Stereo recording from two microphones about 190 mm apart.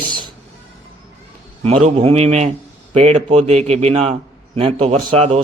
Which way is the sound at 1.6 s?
35° right (ahead or behind).